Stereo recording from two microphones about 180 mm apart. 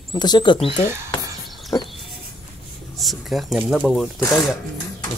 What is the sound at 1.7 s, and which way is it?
Speech, 20° left (ahead or behind).